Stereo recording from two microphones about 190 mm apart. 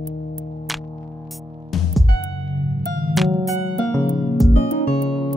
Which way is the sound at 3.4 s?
Centre (ahead or behind).